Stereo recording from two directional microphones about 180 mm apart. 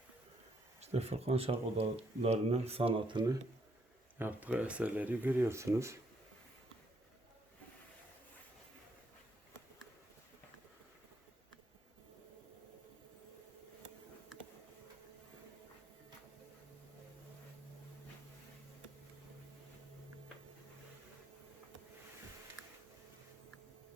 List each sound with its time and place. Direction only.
0.8 s speech: 35° right (ahead or behind)
4.2 s speech: 10° right (ahead or behind)